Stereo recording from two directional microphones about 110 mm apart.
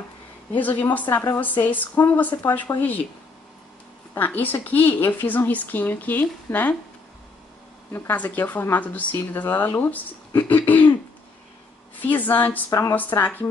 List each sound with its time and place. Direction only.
0.6 s speech: 15° left (ahead or behind)
4.1 s speech: 15° left (ahead or behind)
7.9 s speech: 20° left (ahead or behind)
12.0 s speech: 15° left (ahead or behind)